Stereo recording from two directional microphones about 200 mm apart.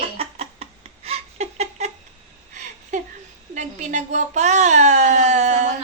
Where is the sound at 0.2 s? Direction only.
30° right (ahead or behind).